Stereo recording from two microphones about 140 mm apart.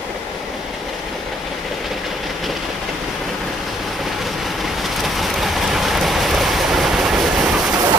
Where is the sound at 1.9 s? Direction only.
Centre (ahead or behind).